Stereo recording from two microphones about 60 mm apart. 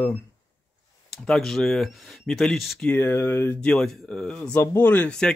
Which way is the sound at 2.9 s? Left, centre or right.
Left.